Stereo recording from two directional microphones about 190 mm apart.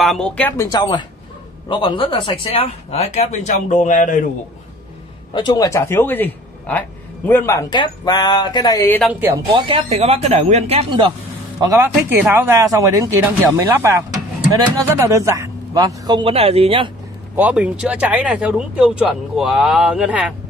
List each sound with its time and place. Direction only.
0.0 s speech: centre (ahead or behind)
0.6 s a man's voice: 20° left (ahead or behind); by 4.3 s 45° left (ahead or behind)
5.3 s a man's voice: 25° left (ahead or behind)
9.5 s speech: 25° right (ahead or behind)
17.4 s speech: 5° right (ahead or behind)